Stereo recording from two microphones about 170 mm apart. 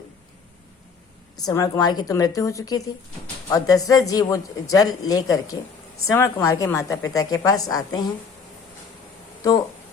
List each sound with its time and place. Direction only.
1.4 s speech: 20° left (ahead or behind)